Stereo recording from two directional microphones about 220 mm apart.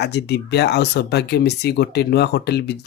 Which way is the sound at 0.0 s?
50° left (ahead or behind).